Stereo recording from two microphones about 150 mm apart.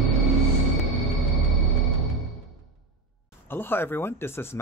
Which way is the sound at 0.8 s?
Centre (ahead or behind).